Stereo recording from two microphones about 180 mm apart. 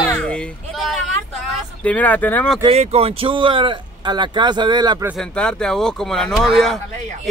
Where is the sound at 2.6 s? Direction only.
35° right (ahead or behind).